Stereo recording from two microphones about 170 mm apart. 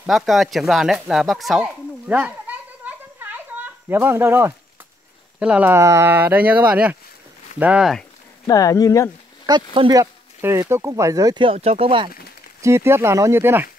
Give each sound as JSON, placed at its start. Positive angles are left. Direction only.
{"t": 0.0, "sound": "speech", "side_deg": 0}
{"t": 8.5, "sound": "speech", "side_deg": 20}
{"t": 9.8, "sound": "speech", "side_deg": -25}
{"t": 12.6, "sound": "speech", "side_deg": -15}